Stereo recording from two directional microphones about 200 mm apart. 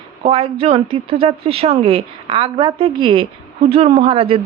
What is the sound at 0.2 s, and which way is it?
Speech, 30° right (ahead or behind).